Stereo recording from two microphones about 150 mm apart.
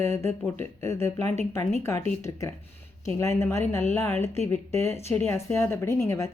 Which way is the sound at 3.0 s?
20° left (ahead or behind).